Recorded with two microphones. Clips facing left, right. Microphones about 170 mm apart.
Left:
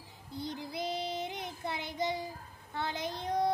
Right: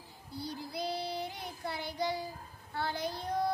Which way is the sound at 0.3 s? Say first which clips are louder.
Left 1 dB; 20° left (ahead or behind).